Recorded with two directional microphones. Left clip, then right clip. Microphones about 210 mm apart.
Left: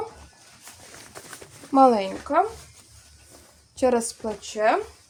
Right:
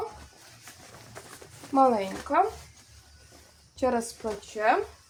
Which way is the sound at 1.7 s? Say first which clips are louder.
Left 5 dB; 50° left (ahead or behind).